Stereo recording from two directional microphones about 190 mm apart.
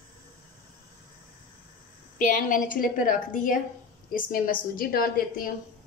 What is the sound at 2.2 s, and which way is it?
A woman's voice, 45° left (ahead or behind).